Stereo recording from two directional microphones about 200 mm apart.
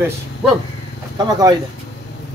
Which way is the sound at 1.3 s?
20° right (ahead or behind).